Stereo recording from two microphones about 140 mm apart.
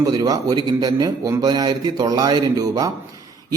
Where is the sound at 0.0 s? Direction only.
30° right (ahead or behind).